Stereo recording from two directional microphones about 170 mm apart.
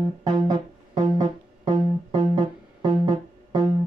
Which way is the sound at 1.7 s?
40° right (ahead or behind).